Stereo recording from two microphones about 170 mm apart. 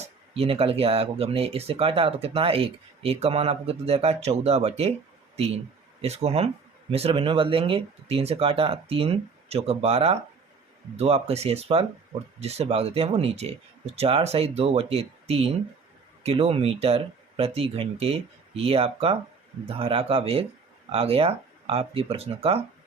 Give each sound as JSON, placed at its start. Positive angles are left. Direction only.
{"t": 0.0, "sound": "speech", "side_deg": -35}
{"t": 6.0, "sound": "speech", "side_deg": -35}